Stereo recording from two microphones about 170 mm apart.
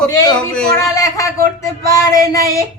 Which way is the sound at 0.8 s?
20° left (ahead or behind).